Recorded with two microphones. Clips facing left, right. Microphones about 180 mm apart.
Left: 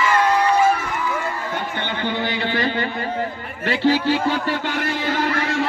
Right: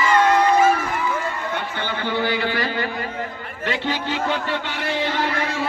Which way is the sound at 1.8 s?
20° left (ahead or behind).